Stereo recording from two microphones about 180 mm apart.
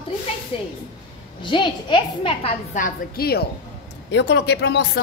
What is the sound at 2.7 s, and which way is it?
Speech, 50° left (ahead or behind).